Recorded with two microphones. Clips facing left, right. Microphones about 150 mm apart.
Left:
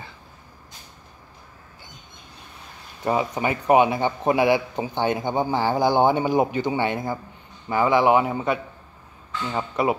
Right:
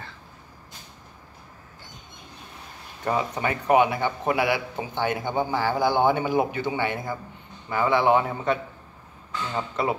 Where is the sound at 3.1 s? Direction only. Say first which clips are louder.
Left 3 dB; 20° left (ahead or behind).